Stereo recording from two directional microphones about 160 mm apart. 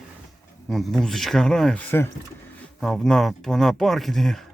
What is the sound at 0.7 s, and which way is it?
Speech, centre (ahead or behind).